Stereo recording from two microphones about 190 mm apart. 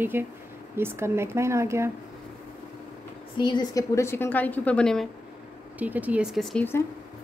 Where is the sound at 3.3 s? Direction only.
25° left (ahead or behind); by 5.1 s 5° left (ahead or behind).